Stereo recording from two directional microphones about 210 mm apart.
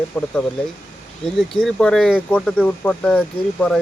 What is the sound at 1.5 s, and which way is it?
Speech, centre (ahead or behind).